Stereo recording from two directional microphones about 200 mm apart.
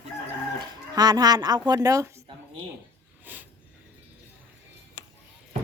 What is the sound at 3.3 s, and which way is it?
Sniff, 10° right (ahead or behind).